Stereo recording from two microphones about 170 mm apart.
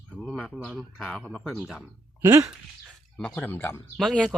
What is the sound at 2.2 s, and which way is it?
Speech, 15° right (ahead or behind).